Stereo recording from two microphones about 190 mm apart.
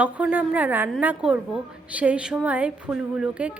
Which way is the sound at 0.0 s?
10° right (ahead or behind).